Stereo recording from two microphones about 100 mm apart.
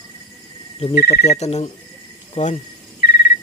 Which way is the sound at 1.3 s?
90° left.